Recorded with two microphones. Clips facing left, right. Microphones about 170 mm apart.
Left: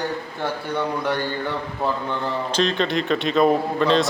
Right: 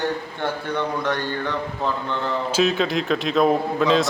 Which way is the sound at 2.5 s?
5° right (ahead or behind).